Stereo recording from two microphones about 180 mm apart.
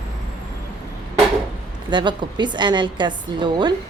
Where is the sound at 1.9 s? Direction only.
25° right (ahead or behind).